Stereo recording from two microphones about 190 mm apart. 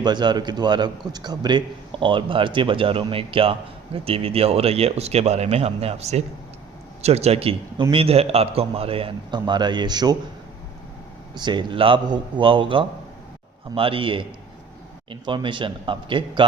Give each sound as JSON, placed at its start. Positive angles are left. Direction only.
{"t": 0.0, "sound": "a man's voice", "side_deg": -25}
{"t": 11.3, "sound": "a man's voice", "side_deg": -25}